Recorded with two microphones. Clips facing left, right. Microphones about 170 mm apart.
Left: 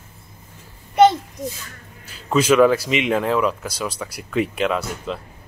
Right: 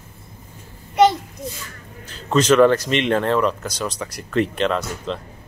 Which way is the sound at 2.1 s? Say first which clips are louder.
Right 1 dB; 5° left (ahead or behind).